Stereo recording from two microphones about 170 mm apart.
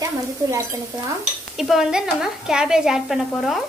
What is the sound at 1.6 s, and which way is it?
A woman's voice, centre (ahead or behind).